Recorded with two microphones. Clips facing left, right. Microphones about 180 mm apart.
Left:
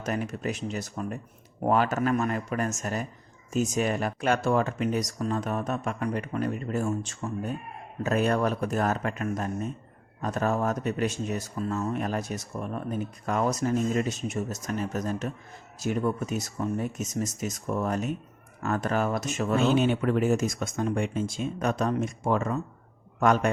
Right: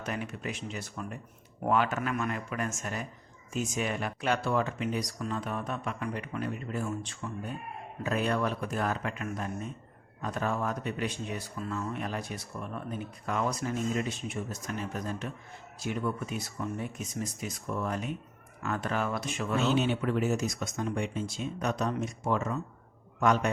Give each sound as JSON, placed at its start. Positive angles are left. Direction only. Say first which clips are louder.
{"t": 0.0, "sound": "speech", "louder": "left 6 dB", "side_deg": 40}